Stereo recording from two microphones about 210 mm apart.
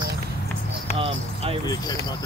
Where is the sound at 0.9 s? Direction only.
25° right (ahead or behind).